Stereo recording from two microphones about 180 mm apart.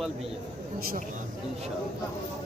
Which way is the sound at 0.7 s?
55° right (ahead or behind).